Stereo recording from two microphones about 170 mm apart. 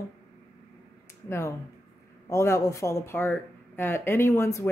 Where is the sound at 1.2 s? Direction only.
15° left (ahead or behind).